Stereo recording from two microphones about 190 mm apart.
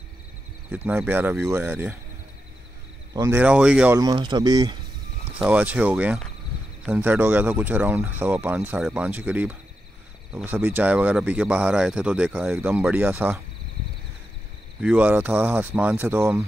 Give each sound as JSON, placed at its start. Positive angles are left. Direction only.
{"t": 0.7, "sound": "speech", "side_deg": -10}
{"t": 3.1, "sound": "speech", "side_deg": -15}
{"t": 4.0, "sound": "speech", "side_deg": -25}
{"t": 5.4, "sound": "speech", "side_deg": -5}
{"t": 14.8, "sound": "speech", "side_deg": -5}